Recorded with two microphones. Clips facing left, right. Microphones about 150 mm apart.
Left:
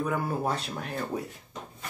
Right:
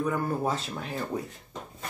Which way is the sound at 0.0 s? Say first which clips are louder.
Right 1 dB; 5° left (ahead or behind).